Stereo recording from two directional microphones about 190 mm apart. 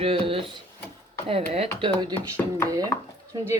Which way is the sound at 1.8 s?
25° right (ahead or behind).